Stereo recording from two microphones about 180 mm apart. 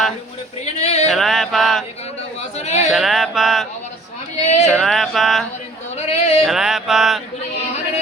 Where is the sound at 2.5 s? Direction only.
35° left (ahead or behind).